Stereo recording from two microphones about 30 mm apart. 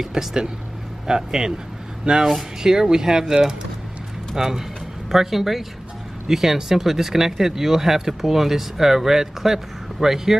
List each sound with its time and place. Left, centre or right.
0.1 s speech: right